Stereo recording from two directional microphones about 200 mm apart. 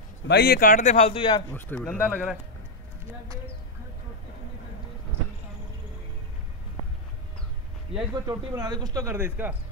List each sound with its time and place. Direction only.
0.3 s speech: 50° left (ahead or behind); by 1.4 s 25° left (ahead or behind)
1.5 s speech: 10° left (ahead or behind)
7.9 s speech: 30° right (ahead or behind)
8.3 s speech: 20° right (ahead or behind)